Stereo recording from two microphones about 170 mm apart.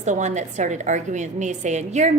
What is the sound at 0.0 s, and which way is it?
A woman's voice, 45° right (ahead or behind).